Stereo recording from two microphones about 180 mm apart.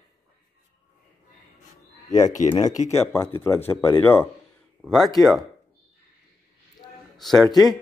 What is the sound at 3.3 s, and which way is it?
Speech, 15° left (ahead or behind).